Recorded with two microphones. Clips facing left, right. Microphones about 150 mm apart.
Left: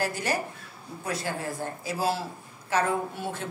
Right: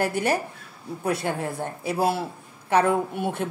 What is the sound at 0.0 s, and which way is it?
Speech, 60° right (ahead or behind).